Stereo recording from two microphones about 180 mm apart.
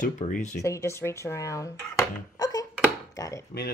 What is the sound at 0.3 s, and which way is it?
Speech, 45° left (ahead or behind).